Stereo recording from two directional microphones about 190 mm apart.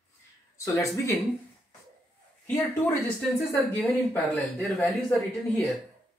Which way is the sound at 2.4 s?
5° left (ahead or behind).